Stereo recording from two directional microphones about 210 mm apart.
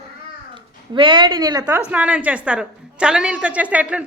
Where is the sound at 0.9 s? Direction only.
25° right (ahead or behind).